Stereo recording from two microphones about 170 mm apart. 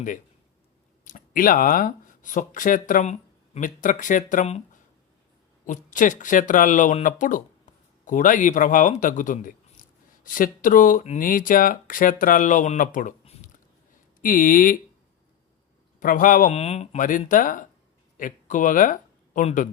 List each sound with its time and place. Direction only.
1.0 s speech: 55° left (ahead or behind)
5.6 s speech: 50° left (ahead or behind)
14.2 s speech: 55° left (ahead or behind)
16.0 s speech: 55° left (ahead or behind)